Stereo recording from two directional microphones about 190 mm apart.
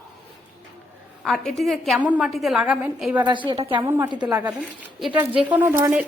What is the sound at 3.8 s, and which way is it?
Speech, 15° right (ahead or behind).